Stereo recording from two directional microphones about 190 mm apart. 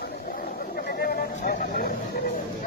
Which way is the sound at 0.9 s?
55° left (ahead or behind).